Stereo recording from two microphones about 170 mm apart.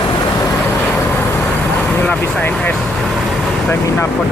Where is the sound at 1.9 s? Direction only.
10° left (ahead or behind).